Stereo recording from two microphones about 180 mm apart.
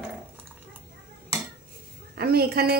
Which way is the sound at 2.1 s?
60° right (ahead or behind).